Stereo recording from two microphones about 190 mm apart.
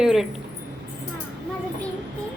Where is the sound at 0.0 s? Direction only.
Centre (ahead or behind).